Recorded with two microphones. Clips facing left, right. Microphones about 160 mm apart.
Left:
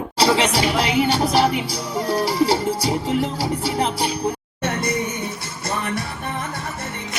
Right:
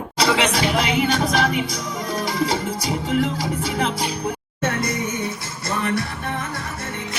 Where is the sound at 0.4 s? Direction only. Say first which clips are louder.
Left 1 dB; 30° left (ahead or behind).